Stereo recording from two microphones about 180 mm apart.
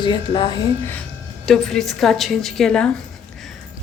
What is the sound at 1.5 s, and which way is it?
A woman's voice, centre (ahead or behind).